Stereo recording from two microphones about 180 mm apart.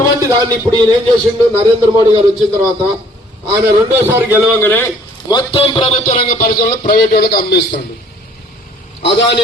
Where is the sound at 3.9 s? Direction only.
10° right (ahead or behind).